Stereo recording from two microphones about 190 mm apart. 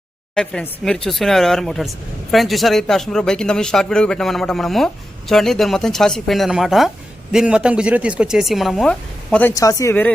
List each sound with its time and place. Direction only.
0.3 s speech: 5° left (ahead or behind)
9.6 s speech: 15° left (ahead or behind)